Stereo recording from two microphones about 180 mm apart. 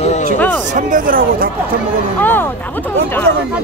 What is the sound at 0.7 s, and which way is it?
Speech, 50° right (ahead or behind).